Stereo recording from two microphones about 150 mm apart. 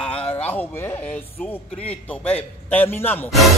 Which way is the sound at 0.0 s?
10° left (ahead or behind).